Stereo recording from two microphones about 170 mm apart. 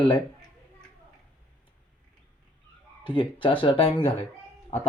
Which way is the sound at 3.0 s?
30° left (ahead or behind).